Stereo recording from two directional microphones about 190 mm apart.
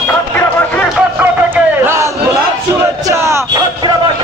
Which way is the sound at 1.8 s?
15° right (ahead or behind).